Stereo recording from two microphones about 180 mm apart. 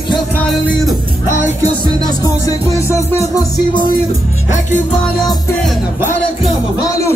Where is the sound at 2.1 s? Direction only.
20° left (ahead or behind).